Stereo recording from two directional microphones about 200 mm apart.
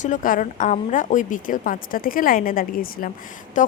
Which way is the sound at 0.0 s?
40° left (ahead or behind).